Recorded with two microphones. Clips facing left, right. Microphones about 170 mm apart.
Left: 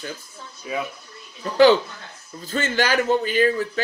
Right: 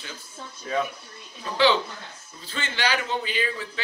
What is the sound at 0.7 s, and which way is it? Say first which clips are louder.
Speech: right 1 dB; 10° left (ahead or behind).